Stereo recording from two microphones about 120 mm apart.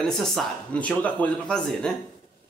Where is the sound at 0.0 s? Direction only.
5° left (ahead or behind).